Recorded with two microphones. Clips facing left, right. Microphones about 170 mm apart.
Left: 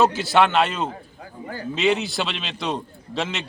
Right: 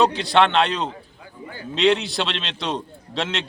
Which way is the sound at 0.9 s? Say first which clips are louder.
Left 1 dB; 40° left (ahead or behind).